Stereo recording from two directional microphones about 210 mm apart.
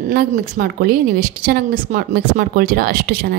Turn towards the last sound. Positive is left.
turn(degrees=-45)  # may be behind; listen again after turning